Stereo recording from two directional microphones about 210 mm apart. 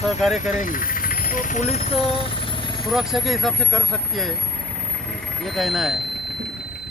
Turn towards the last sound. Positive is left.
turn(degrees=0)  # may be behind; listen again after turning